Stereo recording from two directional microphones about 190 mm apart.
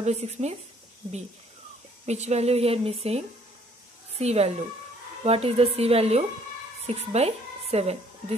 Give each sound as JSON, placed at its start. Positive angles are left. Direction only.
{"t": 0.0, "sound": "speech", "side_deg": -35}
{"t": 2.0, "sound": "a woman's voice", "side_deg": -35}